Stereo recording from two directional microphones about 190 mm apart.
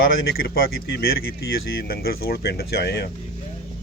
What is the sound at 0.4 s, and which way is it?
Speech, 55° left (ahead or behind).